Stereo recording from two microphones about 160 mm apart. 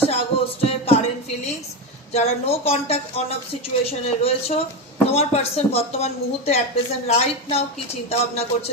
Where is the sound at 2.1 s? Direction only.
40° left (ahead or behind).